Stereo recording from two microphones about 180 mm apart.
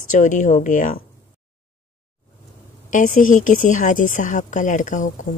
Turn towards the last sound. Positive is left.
turn(degrees=45)  # may be behind; listen again after turning